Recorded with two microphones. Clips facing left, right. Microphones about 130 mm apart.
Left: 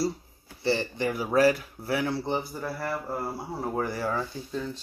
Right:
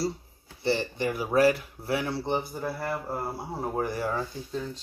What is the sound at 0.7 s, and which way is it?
Speech, 25° right (ahead or behind).